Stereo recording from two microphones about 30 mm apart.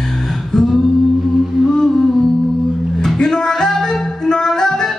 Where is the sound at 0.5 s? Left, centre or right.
Centre.